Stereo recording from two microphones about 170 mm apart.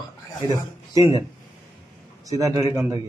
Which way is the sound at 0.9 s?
20° right (ahead or behind).